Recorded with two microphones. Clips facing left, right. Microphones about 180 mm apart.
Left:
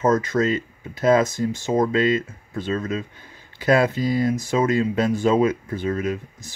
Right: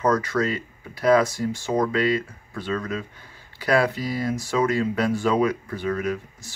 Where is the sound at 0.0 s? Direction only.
20° left (ahead or behind).